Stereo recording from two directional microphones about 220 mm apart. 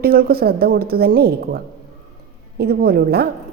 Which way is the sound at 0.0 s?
45° right (ahead or behind).